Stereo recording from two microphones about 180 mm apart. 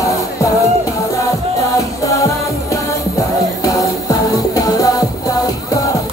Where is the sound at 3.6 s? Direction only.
20° left (ahead or behind).